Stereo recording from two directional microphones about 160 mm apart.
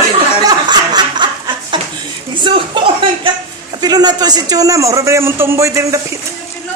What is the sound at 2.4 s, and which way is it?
A man's voice, 30° right (ahead or behind).